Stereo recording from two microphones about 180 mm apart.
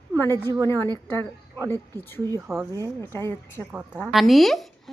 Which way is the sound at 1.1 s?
20° right (ahead or behind).